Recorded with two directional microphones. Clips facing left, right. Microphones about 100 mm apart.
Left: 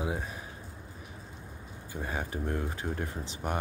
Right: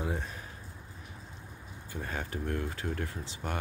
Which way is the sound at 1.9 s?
15° left (ahead or behind).